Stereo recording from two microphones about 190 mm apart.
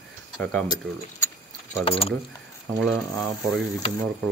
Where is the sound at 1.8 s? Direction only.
30° left (ahead or behind).